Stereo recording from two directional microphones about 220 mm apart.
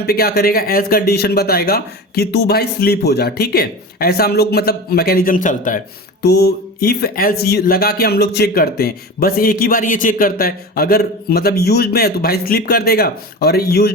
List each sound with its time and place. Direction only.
0.0 s speech: 45° left (ahead or behind)
6.2 s speech: 45° left (ahead or behind)